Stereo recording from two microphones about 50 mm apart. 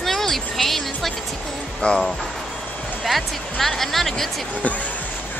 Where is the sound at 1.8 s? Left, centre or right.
Left.